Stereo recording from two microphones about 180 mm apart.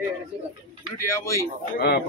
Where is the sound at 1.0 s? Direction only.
15° left (ahead or behind).